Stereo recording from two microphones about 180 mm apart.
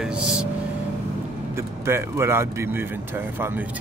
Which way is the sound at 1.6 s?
15° right (ahead or behind).